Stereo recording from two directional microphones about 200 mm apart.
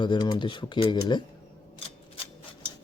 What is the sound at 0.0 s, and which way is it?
Speech, 20° left (ahead or behind).